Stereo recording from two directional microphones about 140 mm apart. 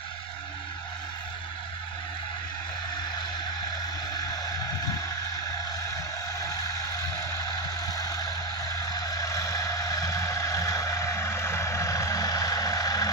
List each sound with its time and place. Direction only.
6.4 s vehicle: 25° left (ahead or behind)
7.8 s music: 25° left (ahead or behind)
8.7 s vehicle: 25° left (ahead or behind)